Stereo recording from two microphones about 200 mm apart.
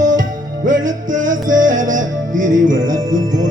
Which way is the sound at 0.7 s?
40° right (ahead or behind).